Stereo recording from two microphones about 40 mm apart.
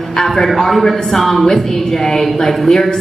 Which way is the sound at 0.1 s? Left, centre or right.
Centre.